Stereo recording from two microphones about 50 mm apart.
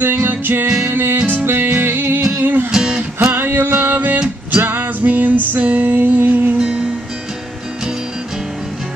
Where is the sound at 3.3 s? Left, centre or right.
Right.